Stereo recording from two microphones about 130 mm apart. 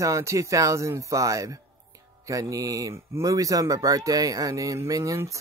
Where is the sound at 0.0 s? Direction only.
25° right (ahead or behind).